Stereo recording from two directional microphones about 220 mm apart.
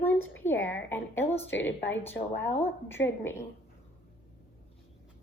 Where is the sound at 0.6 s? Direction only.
60° left (ahead or behind).